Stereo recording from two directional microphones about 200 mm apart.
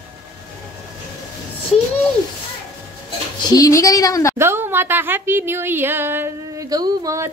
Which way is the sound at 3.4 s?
15° left (ahead or behind).